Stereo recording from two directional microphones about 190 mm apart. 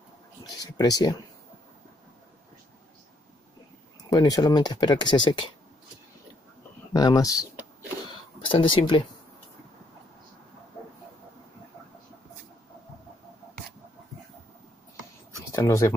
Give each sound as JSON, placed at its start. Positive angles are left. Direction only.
{"t": 0.6, "sound": "speech", "side_deg": 20}
{"t": 4.1, "sound": "speech", "side_deg": 20}
{"t": 6.9, "sound": "speech", "side_deg": 20}
{"t": 8.5, "sound": "speech", "side_deg": 25}
{"t": 15.5, "sound": "speech", "side_deg": 15}